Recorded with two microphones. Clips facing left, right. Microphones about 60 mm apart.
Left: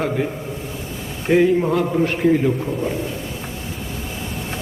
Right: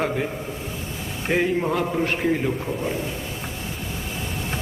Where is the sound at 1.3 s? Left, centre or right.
Centre.